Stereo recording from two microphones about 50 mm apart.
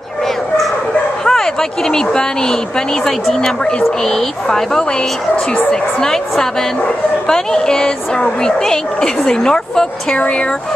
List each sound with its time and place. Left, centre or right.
1.2 s speech: centre